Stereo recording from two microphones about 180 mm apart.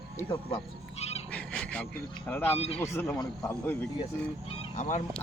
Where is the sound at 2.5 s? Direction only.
35° left (ahead or behind).